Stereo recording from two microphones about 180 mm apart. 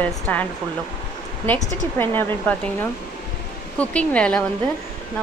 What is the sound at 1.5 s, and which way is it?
Speech, 10° left (ahead or behind).